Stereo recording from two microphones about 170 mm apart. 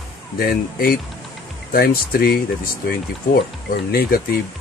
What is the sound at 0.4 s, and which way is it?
Speech, 60° left (ahead or behind).